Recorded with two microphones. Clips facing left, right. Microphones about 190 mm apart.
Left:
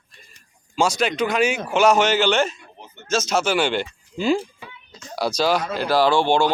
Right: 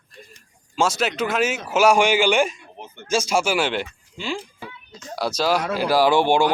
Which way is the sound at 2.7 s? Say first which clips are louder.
Right 4 dB; 50° right (ahead or behind).